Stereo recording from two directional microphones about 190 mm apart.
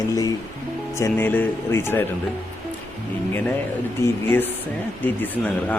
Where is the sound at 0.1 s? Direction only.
20° left (ahead or behind).